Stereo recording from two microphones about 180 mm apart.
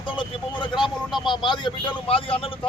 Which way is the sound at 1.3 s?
25° left (ahead or behind).